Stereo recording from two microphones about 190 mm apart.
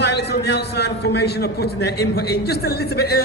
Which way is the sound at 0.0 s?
60° left (ahead or behind).